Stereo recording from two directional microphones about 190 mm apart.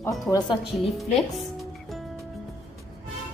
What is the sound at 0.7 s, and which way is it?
Speech, centre (ahead or behind).